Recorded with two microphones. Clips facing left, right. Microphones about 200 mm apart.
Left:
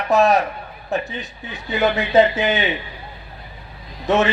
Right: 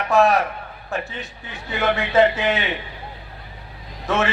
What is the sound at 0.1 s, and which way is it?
A man's voice, 20° left (ahead or behind).